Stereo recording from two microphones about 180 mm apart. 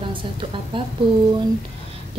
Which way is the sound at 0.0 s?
30° right (ahead or behind).